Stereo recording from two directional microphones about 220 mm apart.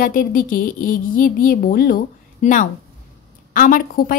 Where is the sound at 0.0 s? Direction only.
40° left (ahead or behind).